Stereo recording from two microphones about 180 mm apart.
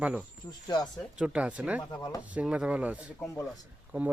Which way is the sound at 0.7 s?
25° left (ahead or behind).